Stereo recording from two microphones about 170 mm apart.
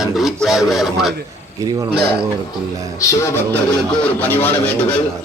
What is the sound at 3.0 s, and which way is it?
Speech, 15° left (ahead or behind).